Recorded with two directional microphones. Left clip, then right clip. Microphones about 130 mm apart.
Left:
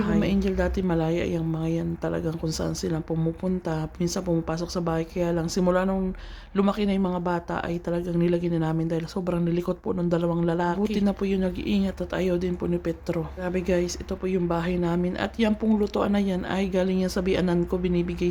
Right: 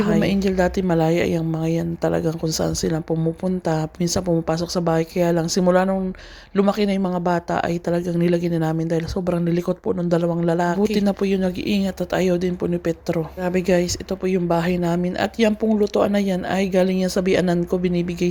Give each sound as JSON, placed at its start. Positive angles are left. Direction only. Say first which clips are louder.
{"t": 0.0, "sound": "a woman's voice", "louder": "right 6 dB", "side_deg": -45}